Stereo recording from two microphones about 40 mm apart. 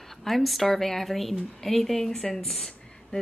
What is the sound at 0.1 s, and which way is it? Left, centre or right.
A woman's voice, centre.